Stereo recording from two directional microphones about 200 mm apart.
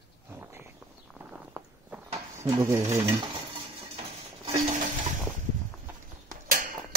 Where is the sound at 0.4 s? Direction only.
15° right (ahead or behind).